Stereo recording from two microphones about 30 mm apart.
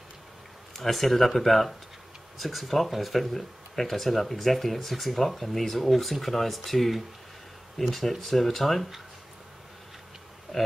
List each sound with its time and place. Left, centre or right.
0.7 s speech: centre
10.5 s speech: centre